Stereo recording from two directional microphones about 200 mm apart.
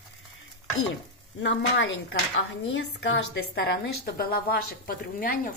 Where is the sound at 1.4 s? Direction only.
65° left (ahead or behind).